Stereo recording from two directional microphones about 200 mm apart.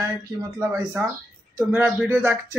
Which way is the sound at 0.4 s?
15° right (ahead or behind).